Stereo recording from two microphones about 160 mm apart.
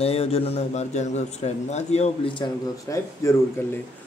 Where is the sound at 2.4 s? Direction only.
25° left (ahead or behind).